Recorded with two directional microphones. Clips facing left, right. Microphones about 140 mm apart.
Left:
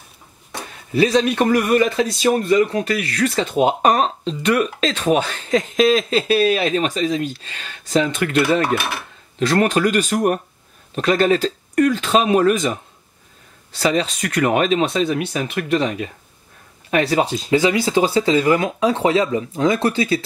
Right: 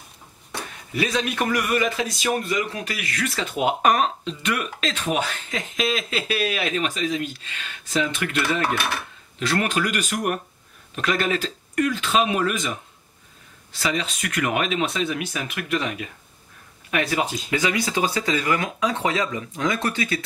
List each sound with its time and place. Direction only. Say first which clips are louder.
0.9 s a man's voice: left 8 dB; 30° left (ahead or behind)
13.7 s a man's voice: left 7 dB; 40° left (ahead or behind)